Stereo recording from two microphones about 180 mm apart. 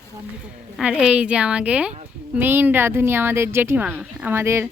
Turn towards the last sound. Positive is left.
turn(degrees=-15)  # may be behind; listen again after turning